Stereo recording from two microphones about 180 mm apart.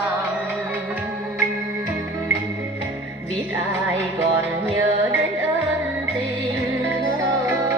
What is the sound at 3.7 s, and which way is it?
Music, 10° right (ahead or behind).